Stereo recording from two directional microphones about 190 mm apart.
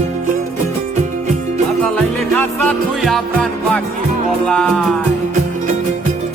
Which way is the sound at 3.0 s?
Centre (ahead or behind).